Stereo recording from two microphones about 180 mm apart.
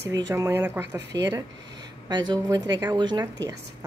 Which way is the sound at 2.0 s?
25° right (ahead or behind).